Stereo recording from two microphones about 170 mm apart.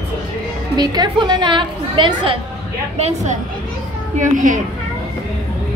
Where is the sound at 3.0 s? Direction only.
40° right (ahead or behind).